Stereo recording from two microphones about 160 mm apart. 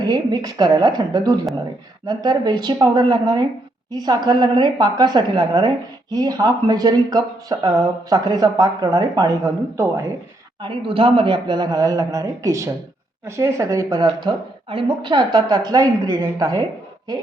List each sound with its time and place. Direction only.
0.0 s a woman's voice: 25° right (ahead or behind)
10.6 s a woman's voice: 30° right (ahead or behind)